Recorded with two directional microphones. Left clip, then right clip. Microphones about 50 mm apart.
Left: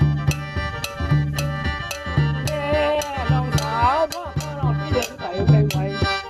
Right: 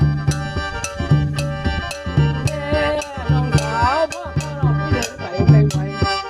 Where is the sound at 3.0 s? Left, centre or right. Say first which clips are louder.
Even; right.